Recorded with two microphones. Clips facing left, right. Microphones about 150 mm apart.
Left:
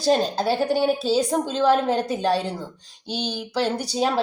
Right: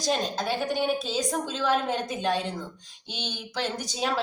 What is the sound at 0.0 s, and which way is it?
A woman's voice, 35° left (ahead or behind).